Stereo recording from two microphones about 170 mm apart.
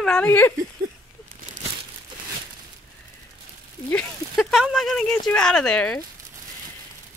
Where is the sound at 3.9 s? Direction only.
Centre (ahead or behind).